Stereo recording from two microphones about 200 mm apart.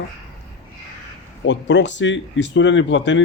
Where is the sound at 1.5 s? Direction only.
65° left (ahead or behind).